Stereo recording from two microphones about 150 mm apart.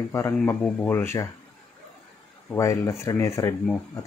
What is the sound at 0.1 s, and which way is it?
Speech, 20° left (ahead or behind).